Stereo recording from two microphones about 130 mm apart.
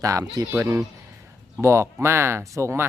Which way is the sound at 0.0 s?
25° right (ahead or behind).